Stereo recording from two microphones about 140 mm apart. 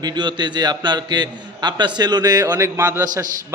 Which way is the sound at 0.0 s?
30° right (ahead or behind).